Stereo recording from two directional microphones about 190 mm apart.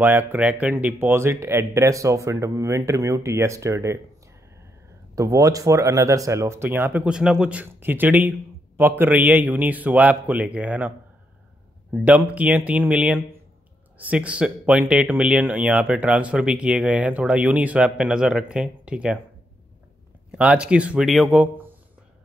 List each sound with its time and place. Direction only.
0.0 s speech: 10° right (ahead or behind)
5.1 s speech: 15° right (ahead or behind)
11.9 s speech: 5° right (ahead or behind)
20.2 s speech: 5° right (ahead or behind)